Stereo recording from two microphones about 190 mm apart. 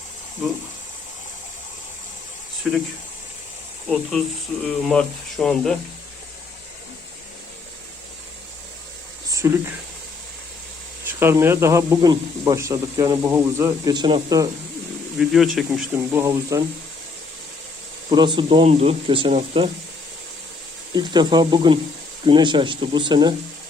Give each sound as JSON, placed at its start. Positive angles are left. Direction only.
{"t": 4.6, "sound": "speech", "side_deg": 5}
{"t": 9.4, "sound": "speech", "side_deg": -15}
{"t": 11.2, "sound": "speech", "side_deg": -15}
{"t": 15.2, "sound": "speech", "side_deg": 0}
{"t": 16.2, "sound": "speech", "side_deg": -15}
{"t": 18.1, "sound": "speech", "side_deg": -25}
{"t": 20.9, "sound": "speech", "side_deg": -20}